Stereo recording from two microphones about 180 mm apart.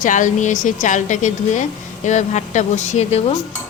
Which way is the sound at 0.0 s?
45° left (ahead or behind).